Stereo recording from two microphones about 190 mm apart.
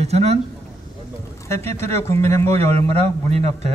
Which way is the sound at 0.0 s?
35° right (ahead or behind).